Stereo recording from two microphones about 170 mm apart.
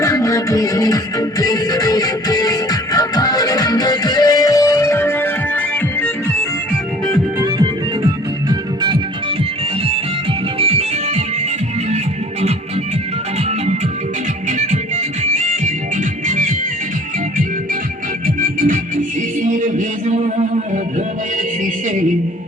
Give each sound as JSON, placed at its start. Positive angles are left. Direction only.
{"t": 0.0, "sound": "music", "side_deg": 20}
{"t": 7.3, "sound": "music", "side_deg": -25}
{"t": 10.6, "sound": "music", "side_deg": -35}
{"t": 14.7, "sound": "music", "side_deg": -45}
{"t": 18.3, "sound": "music", "side_deg": -50}